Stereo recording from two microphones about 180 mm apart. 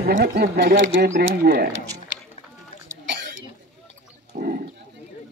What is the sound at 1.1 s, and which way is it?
Speech, 60° right (ahead or behind).